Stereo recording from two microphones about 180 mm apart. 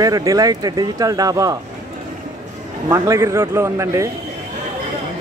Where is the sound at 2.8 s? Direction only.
15° right (ahead or behind).